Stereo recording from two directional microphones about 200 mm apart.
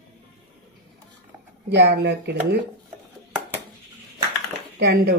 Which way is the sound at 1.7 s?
60° right (ahead or behind).